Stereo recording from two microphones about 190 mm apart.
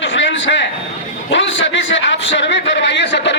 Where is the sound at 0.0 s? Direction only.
75° left (ahead or behind).